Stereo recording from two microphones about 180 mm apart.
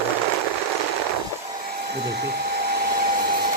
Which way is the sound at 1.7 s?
65° right (ahead or behind).